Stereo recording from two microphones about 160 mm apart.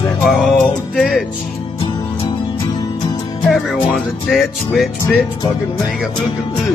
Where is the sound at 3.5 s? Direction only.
Centre (ahead or behind).